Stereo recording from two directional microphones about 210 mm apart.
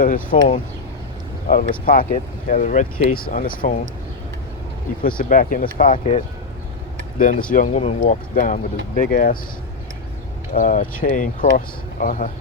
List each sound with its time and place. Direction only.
0.0 s speech: 40° left (ahead or behind)
1.8 s speech: 40° left (ahead or behind)
5.0 s speech: 40° left (ahead or behind)
10.5 s speech: 40° left (ahead or behind)